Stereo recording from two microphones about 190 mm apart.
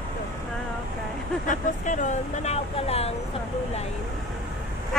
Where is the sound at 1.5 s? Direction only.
40° left (ahead or behind).